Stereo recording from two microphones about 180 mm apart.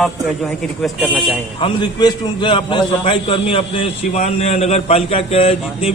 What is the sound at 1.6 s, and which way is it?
A man's voice, 25° left (ahead or behind).